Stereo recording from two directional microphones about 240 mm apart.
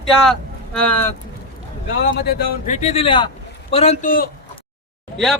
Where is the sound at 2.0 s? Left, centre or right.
Left.